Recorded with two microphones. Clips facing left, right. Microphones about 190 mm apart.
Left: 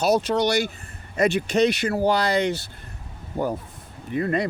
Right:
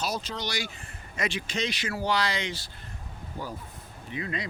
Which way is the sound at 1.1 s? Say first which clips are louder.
Left 11 dB; 55° left (ahead or behind).